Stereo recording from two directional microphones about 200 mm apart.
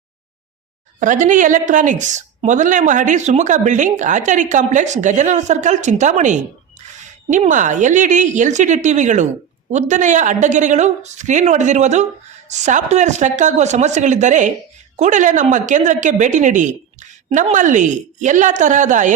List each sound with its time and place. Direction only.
0.9 s a woman's voice: 40° right (ahead or behind)